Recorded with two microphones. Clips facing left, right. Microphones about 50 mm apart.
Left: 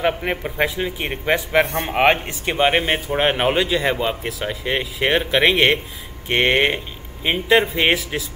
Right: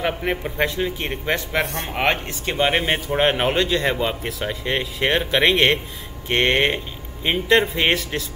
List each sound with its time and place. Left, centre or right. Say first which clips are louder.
0.0 s a man's voice: left 2 dB; centre
1.9 s a man's voice: left 5 dB; centre